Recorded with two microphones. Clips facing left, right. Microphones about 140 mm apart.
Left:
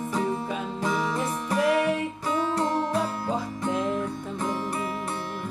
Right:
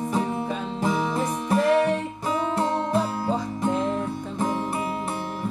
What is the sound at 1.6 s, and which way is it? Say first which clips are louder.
Music: right 2 dB; 5° left (ahead or behind).